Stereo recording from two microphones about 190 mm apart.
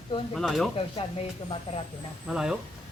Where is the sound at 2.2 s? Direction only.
5° right (ahead or behind).